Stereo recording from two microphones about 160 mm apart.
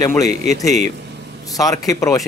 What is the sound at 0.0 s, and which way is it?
Speech, 20° left (ahead or behind).